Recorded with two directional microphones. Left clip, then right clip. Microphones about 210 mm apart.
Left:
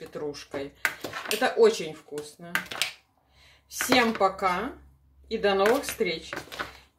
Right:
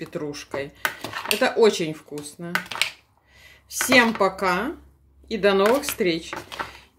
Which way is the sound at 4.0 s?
45° right (ahead or behind).